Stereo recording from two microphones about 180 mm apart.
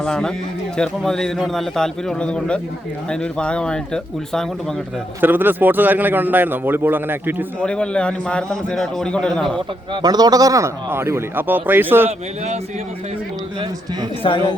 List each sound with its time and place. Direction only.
0.0 s a man's voice: 5° left (ahead or behind)
5.2 s a man's voice: 10° right (ahead or behind)
7.6 s a man's voice: 5° left (ahead or behind)
9.9 s a man's voice: 20° right (ahead or behind)
14.2 s speech: 30° left (ahead or behind)